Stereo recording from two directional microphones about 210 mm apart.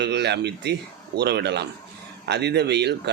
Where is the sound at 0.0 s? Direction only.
55° right (ahead or behind).